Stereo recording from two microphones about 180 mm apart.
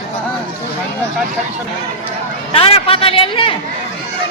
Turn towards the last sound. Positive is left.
turn(degrees=30)  # may be behind; listen again after turning